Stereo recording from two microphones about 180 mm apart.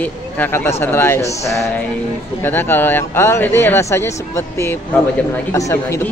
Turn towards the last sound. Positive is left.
turn(degrees=15)  # may be behind; listen again after turning